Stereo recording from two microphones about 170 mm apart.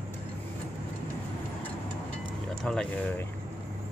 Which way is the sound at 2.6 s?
5° left (ahead or behind).